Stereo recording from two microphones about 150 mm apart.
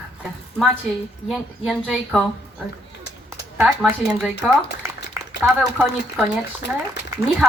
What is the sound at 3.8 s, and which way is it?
Speech, centre (ahead or behind).